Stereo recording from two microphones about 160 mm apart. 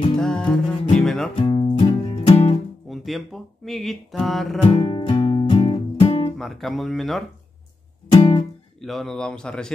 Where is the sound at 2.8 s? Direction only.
Centre (ahead or behind).